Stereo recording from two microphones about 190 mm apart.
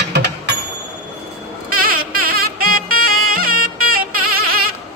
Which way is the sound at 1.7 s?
50° right (ahead or behind).